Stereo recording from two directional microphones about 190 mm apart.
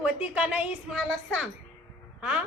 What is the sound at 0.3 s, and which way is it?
Speech, 5° right (ahead or behind).